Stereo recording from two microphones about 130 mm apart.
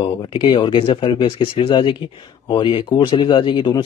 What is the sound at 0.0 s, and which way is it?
Speech, 40° left (ahead or behind).